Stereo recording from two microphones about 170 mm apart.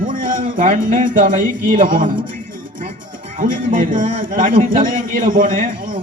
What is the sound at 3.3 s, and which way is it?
A man's voice, 55° right (ahead or behind).